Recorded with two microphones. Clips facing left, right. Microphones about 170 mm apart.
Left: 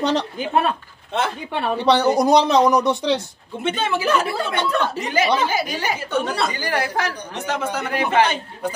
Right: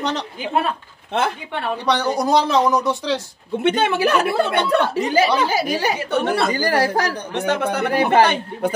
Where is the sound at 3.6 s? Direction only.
65° right (ahead or behind).